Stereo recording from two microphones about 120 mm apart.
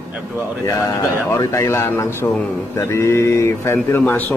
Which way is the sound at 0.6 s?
25° left (ahead or behind).